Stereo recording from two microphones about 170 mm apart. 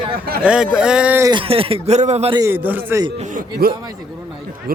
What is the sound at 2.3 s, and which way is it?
Speech, 15° right (ahead or behind).